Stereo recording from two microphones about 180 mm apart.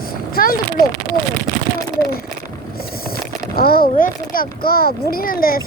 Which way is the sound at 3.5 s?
55° left (ahead or behind).